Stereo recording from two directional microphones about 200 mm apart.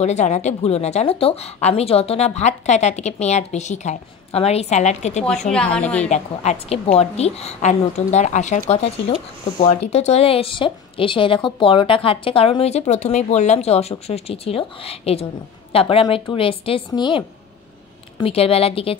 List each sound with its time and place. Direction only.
0.0 s speech: 35° left (ahead or behind)
5.5 s a woman's voice: 5° left (ahead or behind)
6.0 s a woman's voice: 35° left (ahead or behind)